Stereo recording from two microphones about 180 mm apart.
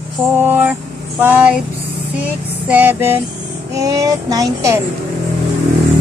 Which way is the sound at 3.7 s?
20° right (ahead or behind).